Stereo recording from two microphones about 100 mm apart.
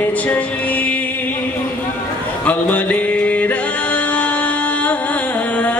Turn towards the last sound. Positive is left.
turn(degrees=15)  # may be behind; listen again after turning